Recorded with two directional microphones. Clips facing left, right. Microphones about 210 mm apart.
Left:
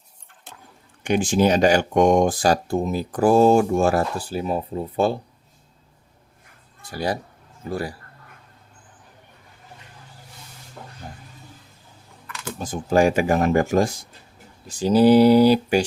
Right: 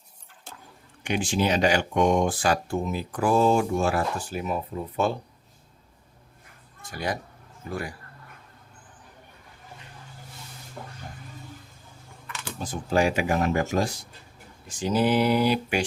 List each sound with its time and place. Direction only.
1.0 s speech: 45° left (ahead or behind)
6.9 s speech: 35° left (ahead or behind)
12.5 s speech: 45° left (ahead or behind)
14.7 s speech: 35° left (ahead or behind)